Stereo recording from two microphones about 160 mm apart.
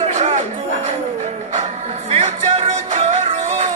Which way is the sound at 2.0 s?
40° right (ahead or behind).